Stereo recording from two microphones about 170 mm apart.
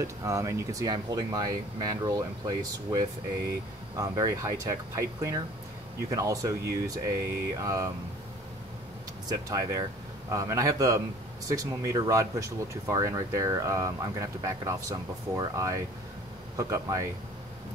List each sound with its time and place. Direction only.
0.0 s speech: 20° right (ahead or behind)
9.5 s speech: 20° right (ahead or behind)